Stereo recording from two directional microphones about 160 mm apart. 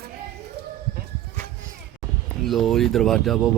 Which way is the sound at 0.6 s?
90° right.